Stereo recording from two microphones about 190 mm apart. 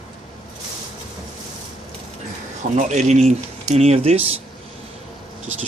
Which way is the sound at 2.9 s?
35° right (ahead or behind).